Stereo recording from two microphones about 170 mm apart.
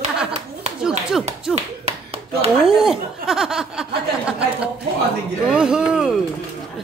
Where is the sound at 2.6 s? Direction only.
5° right (ahead or behind).